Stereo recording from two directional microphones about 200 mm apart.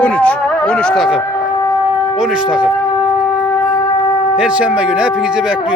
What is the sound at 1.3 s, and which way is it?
Shofar, 15° left (ahead or behind).